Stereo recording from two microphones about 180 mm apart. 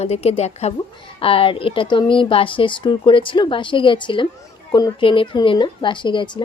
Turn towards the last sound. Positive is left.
turn(degrees=25)  # may be behind; listen again after turning